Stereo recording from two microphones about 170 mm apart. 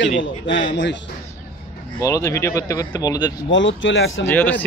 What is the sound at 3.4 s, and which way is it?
Speech, 90° left.